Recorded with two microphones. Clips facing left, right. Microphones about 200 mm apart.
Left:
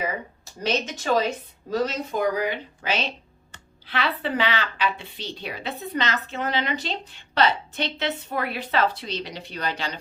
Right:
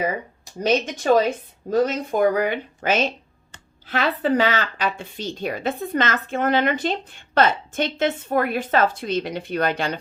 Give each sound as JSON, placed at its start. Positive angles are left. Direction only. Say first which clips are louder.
{"t": 0.6, "sound": "a woman's voice", "louder": "right 5 dB", "side_deg": -50}